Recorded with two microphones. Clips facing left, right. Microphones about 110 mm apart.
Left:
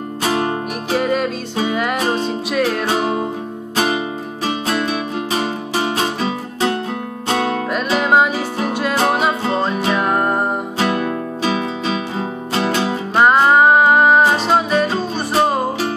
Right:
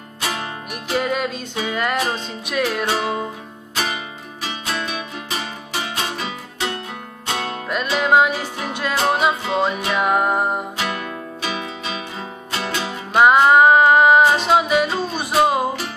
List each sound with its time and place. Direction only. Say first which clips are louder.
0.2 s music: left 8 dB; 35° left (ahead or behind)
0.9 s music: left 3 dB; centre (ahead or behind)
2.0 s music: left 4 dB; 40° left (ahead or behind)
2.5 s music: left 2 dB; centre (ahead or behind)
3.7 s music: left 7 dB; 40° left (ahead or behind)
7.2 s music: left 7 dB; 50° left (ahead or behind)
7.7 s music: even; centre (ahead or behind)
9.5 s music: left 2 dB; 5° right (ahead or behind)
10.8 s music: left 7 dB; 35° left (ahead or behind)
13.1 s music: even; 5° right (ahead or behind)